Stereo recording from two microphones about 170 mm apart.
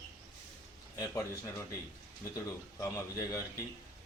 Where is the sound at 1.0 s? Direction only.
15° left (ahead or behind).